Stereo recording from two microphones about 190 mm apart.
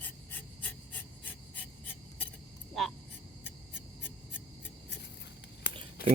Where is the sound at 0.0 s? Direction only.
10° left (ahead or behind).